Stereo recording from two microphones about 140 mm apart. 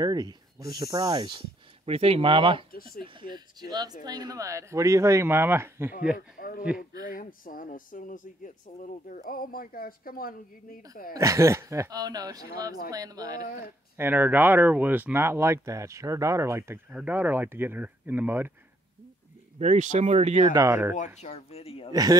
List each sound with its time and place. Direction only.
0.0 s speech: 30° right (ahead or behind)
1.9 s speech: 45° right (ahead or behind)
2.7 s speech: 90° left
3.3 s speech: 30° right (ahead or behind)
6.1 s speech: 90° left
11.1 s speech: 20° right (ahead or behind)
13.9 s speech: 15° right (ahead or behind)
19.6 s speech: 55° right (ahead or behind)
20.5 s speech: 20° right (ahead or behind)
20.9 s speech: 55° left (ahead or behind)